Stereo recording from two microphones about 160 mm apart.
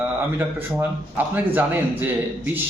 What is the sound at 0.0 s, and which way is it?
A man's voice, 10° right (ahead or behind).